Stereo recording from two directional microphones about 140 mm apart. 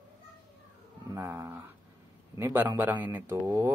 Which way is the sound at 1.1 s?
20° right (ahead or behind).